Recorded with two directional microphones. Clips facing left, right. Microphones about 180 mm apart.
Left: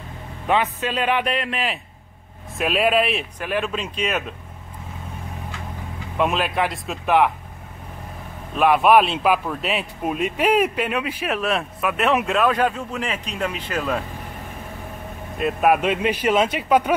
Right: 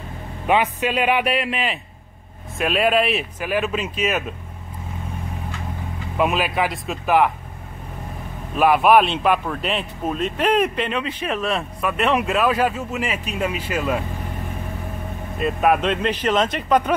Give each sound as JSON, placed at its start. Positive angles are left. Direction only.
{"t": 0.5, "sound": "a man's voice", "side_deg": -15}
{"t": 6.1, "sound": "speech", "side_deg": -5}
{"t": 8.5, "sound": "speech", "side_deg": 0}
{"t": 15.3, "sound": "speech", "side_deg": 0}